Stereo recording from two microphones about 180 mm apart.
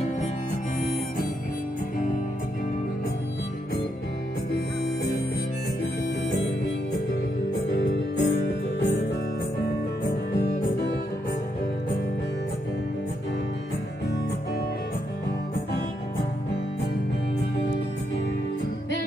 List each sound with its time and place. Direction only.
7.8 s music: 70° left (ahead or behind)